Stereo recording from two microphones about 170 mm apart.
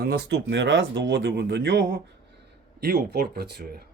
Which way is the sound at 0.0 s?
75° right (ahead or behind).